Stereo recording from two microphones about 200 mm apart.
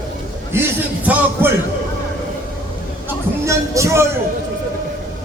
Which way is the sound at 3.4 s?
15° right (ahead or behind).